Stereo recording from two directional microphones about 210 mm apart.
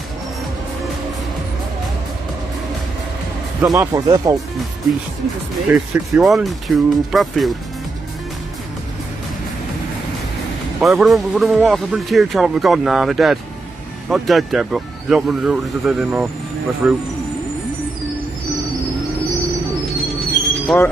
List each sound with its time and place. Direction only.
3.7 s speech: 15° right (ahead or behind)
5.7 s speech: centre (ahead or behind)
10.8 s speech: centre (ahead or behind)
20.0 s a sound: centre (ahead or behind)